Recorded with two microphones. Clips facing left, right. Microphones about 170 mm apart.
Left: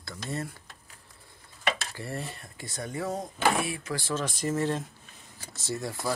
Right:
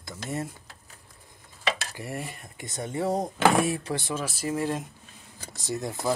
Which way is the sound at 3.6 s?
40° right (ahead or behind).